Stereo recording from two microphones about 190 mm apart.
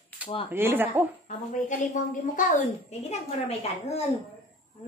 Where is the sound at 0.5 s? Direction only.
10° right (ahead or behind).